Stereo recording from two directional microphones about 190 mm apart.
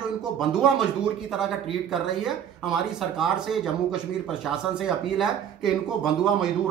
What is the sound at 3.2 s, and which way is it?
Speech, centre (ahead or behind).